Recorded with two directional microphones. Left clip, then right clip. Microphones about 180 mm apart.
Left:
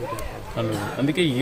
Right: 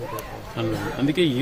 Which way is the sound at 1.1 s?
10° left (ahead or behind).